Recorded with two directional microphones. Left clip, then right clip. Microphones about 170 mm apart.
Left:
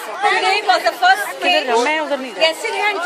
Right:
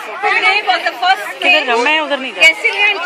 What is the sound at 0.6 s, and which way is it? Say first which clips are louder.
Speech: right 1 dB; 30° left (ahead or behind).